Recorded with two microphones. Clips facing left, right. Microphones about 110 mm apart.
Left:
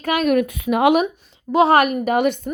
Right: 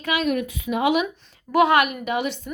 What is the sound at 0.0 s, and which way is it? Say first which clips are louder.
Speech: left 6 dB; 50° left (ahead or behind).